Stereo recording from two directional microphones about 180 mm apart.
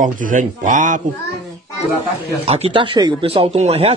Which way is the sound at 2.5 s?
30° right (ahead or behind).